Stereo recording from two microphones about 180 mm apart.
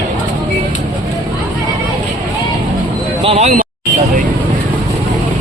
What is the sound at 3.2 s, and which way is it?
Speech, 35° right (ahead or behind).